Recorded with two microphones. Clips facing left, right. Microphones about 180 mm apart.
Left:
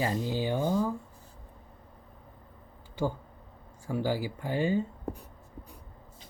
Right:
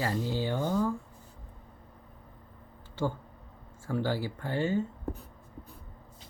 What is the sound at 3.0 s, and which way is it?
Speech, 15° left (ahead or behind).